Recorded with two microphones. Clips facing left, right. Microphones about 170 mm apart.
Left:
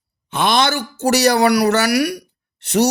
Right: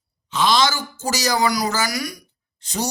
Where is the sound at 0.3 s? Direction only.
60° left (ahead or behind).